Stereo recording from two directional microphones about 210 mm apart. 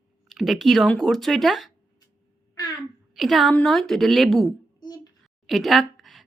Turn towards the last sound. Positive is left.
turn(degrees=0)  # may be behind; listen again after turning